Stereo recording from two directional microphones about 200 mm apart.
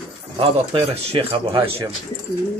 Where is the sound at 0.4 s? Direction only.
25° right (ahead or behind).